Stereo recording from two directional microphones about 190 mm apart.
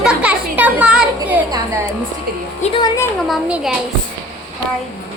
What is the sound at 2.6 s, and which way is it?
Speech, 25° left (ahead or behind).